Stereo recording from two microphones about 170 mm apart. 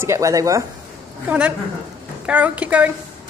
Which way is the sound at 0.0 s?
15° right (ahead or behind).